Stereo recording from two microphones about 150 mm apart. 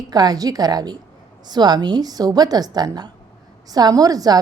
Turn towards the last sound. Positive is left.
turn(degrees=-25)  # may be behind; listen again after turning